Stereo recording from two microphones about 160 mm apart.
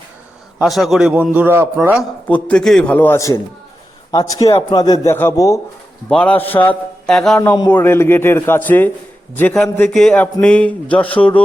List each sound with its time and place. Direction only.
0.6 s a man's voice: centre (ahead or behind)
2.0 s a man's voice: 10° left (ahead or behind)
6.1 s a man's voice: 5° left (ahead or behind)